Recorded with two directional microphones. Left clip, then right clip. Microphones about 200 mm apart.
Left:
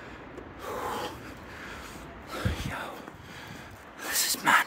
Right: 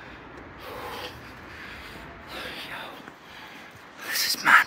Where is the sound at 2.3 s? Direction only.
55° left (ahead or behind).